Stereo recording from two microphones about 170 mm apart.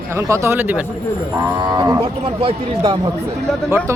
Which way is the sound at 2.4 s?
30° right (ahead or behind).